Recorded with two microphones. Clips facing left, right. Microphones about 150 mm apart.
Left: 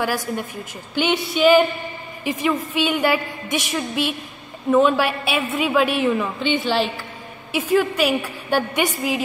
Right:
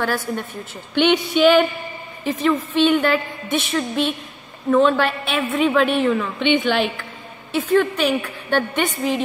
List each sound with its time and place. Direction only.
0.0 s a woman's voice: 10° left (ahead or behind)
7.5 s a woman's voice: 10° left (ahead or behind)